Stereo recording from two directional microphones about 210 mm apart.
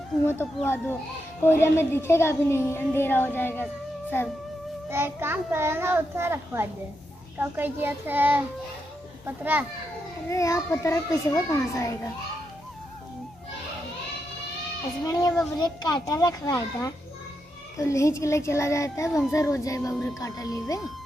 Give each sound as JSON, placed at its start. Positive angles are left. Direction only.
{"t": 0.2, "sound": "speech", "side_deg": 10}
{"t": 4.8, "sound": "a child's voice", "side_deg": -10}
{"t": 10.3, "sound": "speech", "side_deg": 15}
{"t": 15.0, "sound": "a child's voice", "side_deg": 20}